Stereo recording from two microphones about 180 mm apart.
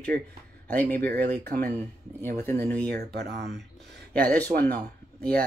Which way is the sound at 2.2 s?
10° left (ahead or behind).